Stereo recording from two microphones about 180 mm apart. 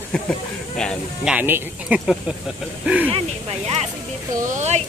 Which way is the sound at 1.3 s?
10° right (ahead or behind).